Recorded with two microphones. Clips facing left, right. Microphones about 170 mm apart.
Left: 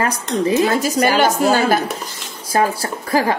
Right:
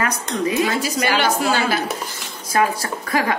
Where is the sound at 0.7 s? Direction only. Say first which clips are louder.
Left 5 dB; 45° left (ahead or behind).